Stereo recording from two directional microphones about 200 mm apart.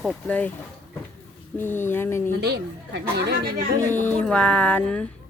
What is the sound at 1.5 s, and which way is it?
Speech, 10° left (ahead or behind).